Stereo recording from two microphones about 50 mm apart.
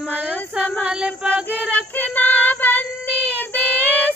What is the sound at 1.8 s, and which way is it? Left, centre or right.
Child singing, left.